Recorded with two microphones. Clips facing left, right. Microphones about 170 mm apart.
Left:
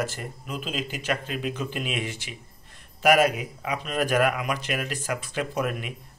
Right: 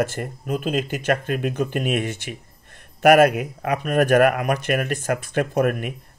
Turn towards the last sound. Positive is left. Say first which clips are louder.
# right 7 dB
turn(degrees=-55)  # may be behind; listen again after turning